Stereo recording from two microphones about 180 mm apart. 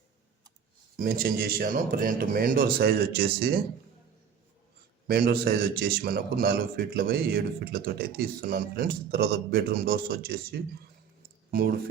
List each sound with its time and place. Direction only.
0.9 s speech: 50° right (ahead or behind)
5.0 s a man's voice: 60° right (ahead or behind)